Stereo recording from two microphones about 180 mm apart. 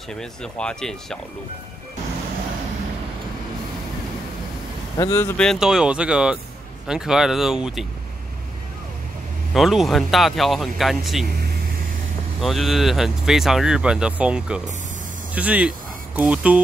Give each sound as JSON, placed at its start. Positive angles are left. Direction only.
{"t": 0.1, "sound": "speech", "side_deg": 5}
{"t": 4.9, "sound": "speech", "side_deg": 20}
{"t": 5.4, "sound": "speech", "side_deg": 0}
{"t": 9.5, "sound": "speech", "side_deg": 0}
{"t": 12.4, "sound": "speech", "side_deg": 0}